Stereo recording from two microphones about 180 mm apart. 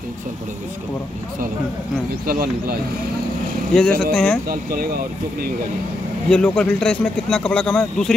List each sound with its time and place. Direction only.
2.2 s speech: 55° right (ahead or behind)
3.7 s a man's voice: 5° left (ahead or behind)
4.5 s speech: 55° right (ahead or behind)
6.2 s a man's voice: 5° left (ahead or behind)